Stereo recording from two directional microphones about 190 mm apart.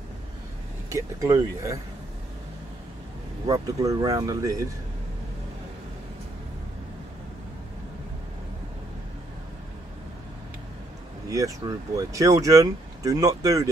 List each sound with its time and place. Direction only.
0.9 s speech: 15° right (ahead or behind)
3.4 s speech: 20° right (ahead or behind)
11.2 s speech: 15° right (ahead or behind)